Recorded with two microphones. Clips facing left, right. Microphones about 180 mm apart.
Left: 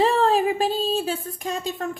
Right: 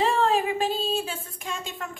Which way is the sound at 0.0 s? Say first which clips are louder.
Left 4 dB; 35° left (ahead or behind).